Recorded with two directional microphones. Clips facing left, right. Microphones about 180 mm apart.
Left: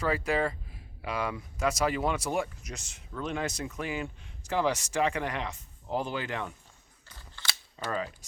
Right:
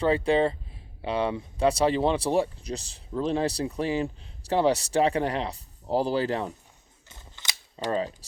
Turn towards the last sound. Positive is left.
turn(degrees=-20)  # may be behind; listen again after turning